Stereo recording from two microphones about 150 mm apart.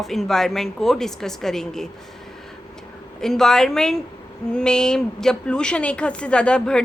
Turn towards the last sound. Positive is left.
turn(degrees=5)  # may be behind; listen again after turning